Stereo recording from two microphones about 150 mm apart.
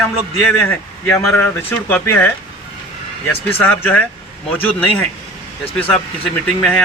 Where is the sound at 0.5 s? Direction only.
15° left (ahead or behind).